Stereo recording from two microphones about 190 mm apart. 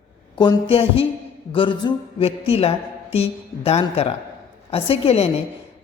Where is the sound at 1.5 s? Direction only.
25° left (ahead or behind).